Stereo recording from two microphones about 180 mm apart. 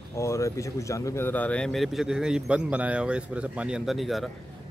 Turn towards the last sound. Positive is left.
turn(degrees=0)  # may be behind; listen again after turning